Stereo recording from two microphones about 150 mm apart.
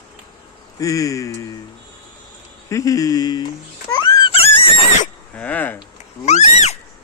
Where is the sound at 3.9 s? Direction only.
30° left (ahead or behind).